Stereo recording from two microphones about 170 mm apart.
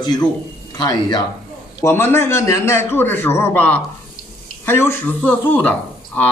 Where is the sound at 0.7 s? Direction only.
25° left (ahead or behind).